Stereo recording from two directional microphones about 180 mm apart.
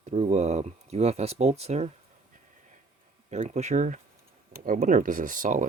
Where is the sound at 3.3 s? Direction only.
40° right (ahead or behind).